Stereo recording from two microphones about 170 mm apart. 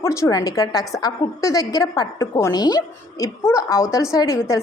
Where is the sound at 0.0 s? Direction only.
15° left (ahead or behind).